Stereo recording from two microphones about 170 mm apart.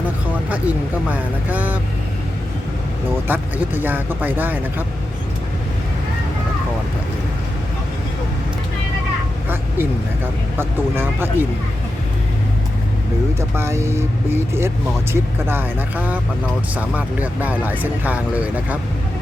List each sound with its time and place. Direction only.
0.5 s speech: 10° right (ahead or behind)
3.2 s speech: 10° right (ahead or behind)
10.6 s speech: 15° right (ahead or behind)
13.6 s speech: 15° right (ahead or behind)
17.4 s speech: 10° right (ahead or behind)